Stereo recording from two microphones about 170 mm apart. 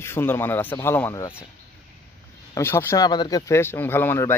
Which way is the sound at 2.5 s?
15° left (ahead or behind).